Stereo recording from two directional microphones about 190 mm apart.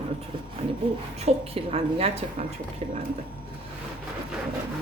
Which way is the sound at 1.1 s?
30° right (ahead or behind).